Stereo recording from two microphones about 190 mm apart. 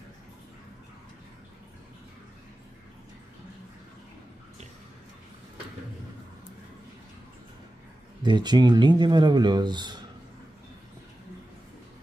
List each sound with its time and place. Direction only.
8.2 s speech: 25° right (ahead or behind)